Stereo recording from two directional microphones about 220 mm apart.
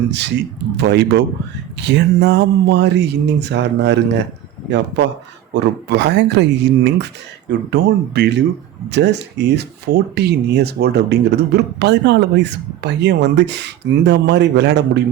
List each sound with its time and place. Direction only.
0.1 s speech: 50° right (ahead or behind)
5.5 s speech: 50° right (ahead or behind)